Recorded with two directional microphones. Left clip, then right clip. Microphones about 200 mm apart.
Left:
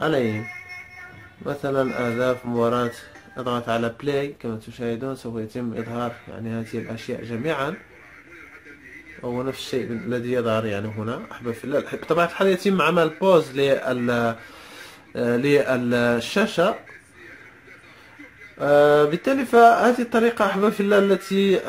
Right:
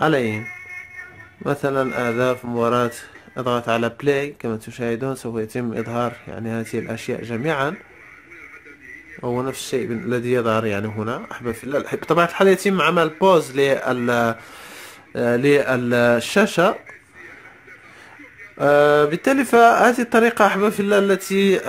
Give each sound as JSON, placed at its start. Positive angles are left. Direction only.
{"t": 0.0, "sound": "speech", "side_deg": -45}
{"t": 1.4, "sound": "speech", "side_deg": -50}
{"t": 9.2, "sound": "speech", "side_deg": -50}
{"t": 18.6, "sound": "speech", "side_deg": -50}